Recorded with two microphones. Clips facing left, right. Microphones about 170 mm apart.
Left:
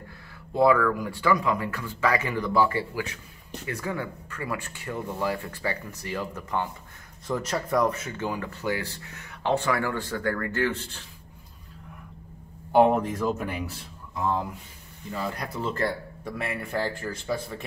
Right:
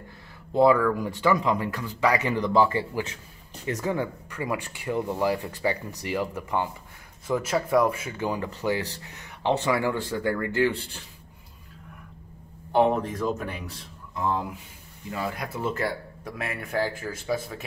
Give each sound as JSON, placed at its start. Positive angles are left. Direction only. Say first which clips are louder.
{"t": 0.6, "sound": "speech", "louder": "right 1 dB", "side_deg": -20}
{"t": 12.7, "sound": "speech", "louder": "left 2 dB", "side_deg": 10}
{"t": 15.3, "sound": "speech", "louder": "right 1 dB", "side_deg": -5}